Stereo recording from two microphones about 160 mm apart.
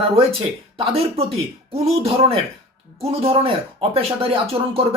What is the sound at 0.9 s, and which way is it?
Speech, 40° right (ahead or behind).